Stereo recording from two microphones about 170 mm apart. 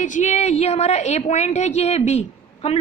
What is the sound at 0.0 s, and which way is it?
A woman's voice, 45° left (ahead or behind).